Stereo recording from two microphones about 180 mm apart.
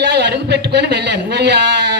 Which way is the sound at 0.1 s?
70° right (ahead or behind).